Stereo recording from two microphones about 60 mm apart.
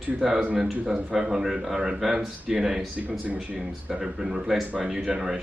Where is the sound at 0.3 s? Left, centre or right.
Centre.